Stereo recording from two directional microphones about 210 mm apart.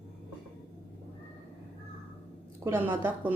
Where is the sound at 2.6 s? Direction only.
10° right (ahead or behind).